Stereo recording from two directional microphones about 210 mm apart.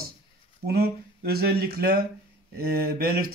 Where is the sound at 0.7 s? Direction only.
50° right (ahead or behind).